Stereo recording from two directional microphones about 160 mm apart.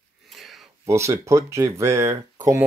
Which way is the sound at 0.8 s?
20° right (ahead or behind).